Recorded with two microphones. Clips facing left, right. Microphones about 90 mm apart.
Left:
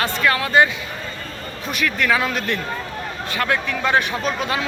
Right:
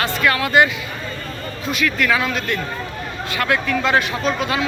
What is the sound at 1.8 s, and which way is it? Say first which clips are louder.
Speech: even; 30° left (ahead or behind).